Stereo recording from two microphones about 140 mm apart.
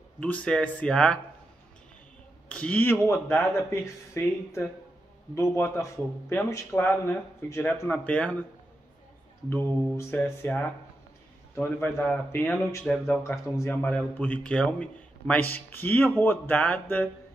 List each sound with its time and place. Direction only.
0.2 s speech: 10° left (ahead or behind)
2.5 s speech: 10° left (ahead or behind)
9.5 s speech: 15° left (ahead or behind)